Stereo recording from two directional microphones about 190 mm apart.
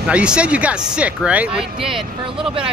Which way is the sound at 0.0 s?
5° right (ahead or behind).